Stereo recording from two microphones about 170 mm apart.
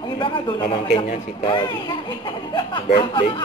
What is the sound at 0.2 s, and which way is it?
Speech, 35° left (ahead or behind).